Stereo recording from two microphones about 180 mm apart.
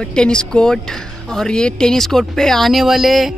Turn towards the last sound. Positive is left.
turn(degrees=0)  # may be behind; listen again after turning